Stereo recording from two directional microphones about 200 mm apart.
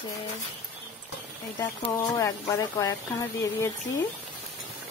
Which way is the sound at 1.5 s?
15° left (ahead or behind).